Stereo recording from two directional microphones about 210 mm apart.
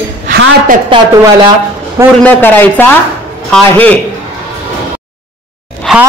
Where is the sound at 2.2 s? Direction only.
10° left (ahead or behind).